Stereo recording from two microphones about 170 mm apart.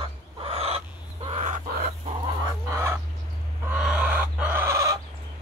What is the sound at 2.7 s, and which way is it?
Fowl, 15° right (ahead or behind).